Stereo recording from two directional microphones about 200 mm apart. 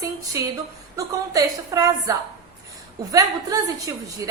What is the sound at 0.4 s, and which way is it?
Speech, 15° right (ahead or behind).